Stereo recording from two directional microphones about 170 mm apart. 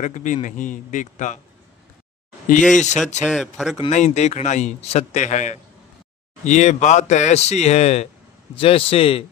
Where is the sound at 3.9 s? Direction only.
45° left (ahead or behind).